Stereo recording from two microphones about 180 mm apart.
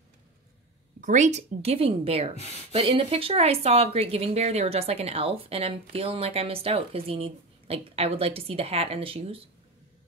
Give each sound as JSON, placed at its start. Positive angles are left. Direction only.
{"t": 1.0, "sound": "a woman's voice", "side_deg": -40}
{"t": 2.3, "sound": "speech", "side_deg": 35}
{"t": 2.7, "sound": "a woman's voice", "side_deg": -30}